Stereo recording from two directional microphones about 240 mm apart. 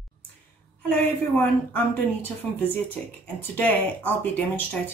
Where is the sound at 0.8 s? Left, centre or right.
Centre.